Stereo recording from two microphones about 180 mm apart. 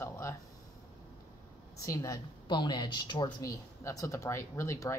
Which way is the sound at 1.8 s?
20° left (ahead or behind).